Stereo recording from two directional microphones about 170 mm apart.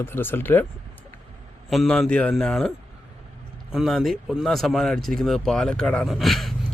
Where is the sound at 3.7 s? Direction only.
Centre (ahead or behind).